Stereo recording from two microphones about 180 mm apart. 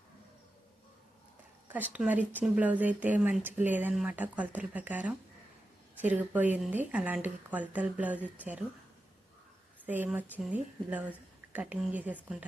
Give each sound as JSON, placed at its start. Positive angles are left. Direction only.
{"t": 1.7, "sound": "speech", "side_deg": -10}
{"t": 9.8, "sound": "speech", "side_deg": -10}